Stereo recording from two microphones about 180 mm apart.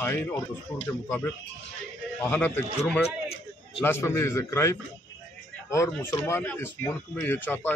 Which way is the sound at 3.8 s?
15° left (ahead or behind).